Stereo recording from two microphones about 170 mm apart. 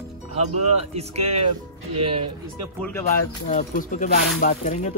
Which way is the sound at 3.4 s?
50° left (ahead or behind).